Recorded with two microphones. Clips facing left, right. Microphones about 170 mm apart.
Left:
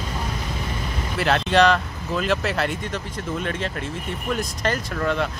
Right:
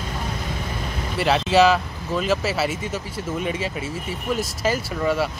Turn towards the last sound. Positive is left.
turn(degrees=-5)  # may be behind; listen again after turning